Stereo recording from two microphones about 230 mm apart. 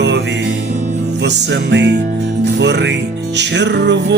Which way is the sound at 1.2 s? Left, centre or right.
Right.